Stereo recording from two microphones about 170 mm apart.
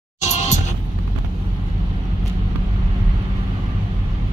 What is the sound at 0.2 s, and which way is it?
Music, 45° left (ahead or behind).